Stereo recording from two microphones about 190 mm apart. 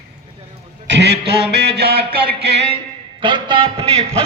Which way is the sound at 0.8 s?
65° right (ahead or behind).